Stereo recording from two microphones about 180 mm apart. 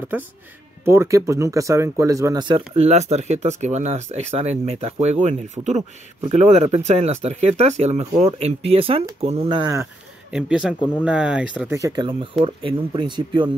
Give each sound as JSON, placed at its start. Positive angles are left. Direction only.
{"t": 0.8, "sound": "speech", "side_deg": -15}
{"t": 2.7, "sound": "speech", "side_deg": -35}
{"t": 10.3, "sound": "speech", "side_deg": -5}
{"t": 11.7, "sound": "speech", "side_deg": -20}